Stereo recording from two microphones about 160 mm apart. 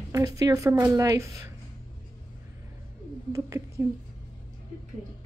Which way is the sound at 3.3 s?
20° right (ahead or behind).